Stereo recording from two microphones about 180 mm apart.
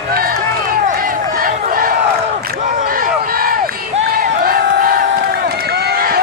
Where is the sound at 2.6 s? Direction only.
50° right (ahead or behind).